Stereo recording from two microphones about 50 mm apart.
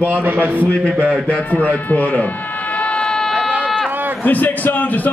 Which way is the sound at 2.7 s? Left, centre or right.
Left.